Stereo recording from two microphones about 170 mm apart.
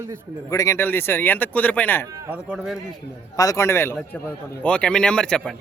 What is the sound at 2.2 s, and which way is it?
Speech, 10° right (ahead or behind).